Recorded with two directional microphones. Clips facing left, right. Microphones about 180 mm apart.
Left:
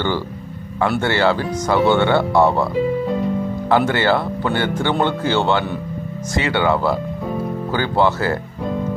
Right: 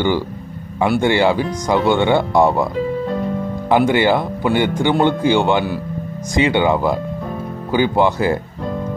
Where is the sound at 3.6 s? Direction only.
15° right (ahead or behind).